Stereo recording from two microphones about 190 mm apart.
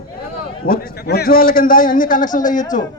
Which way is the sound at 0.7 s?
55° left (ahead or behind).